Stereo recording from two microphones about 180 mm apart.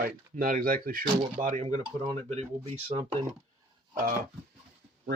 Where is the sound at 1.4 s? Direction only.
40° right (ahead or behind).